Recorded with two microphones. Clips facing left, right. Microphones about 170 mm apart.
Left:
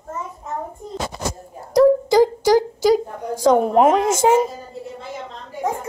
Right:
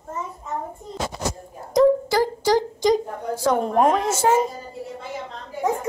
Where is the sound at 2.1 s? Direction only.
15° left (ahead or behind).